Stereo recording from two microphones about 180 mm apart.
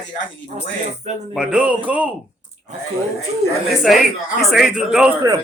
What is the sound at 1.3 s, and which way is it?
Speech, 5° right (ahead or behind).